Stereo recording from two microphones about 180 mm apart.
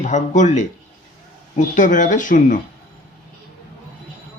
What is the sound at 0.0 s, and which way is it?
Speech, 40° left (ahead or behind).